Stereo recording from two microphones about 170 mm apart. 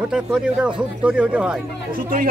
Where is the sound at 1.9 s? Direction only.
55° right (ahead or behind).